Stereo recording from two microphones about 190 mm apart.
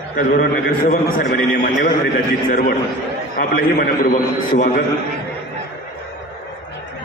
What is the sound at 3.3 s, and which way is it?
A man's voice, 50° left (ahead or behind).